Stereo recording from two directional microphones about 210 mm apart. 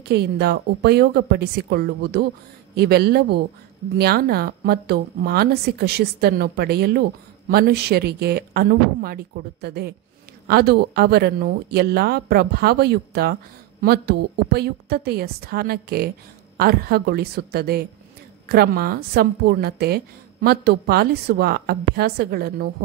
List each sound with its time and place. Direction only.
0.1 s a woman's voice: 50° right (ahead or behind)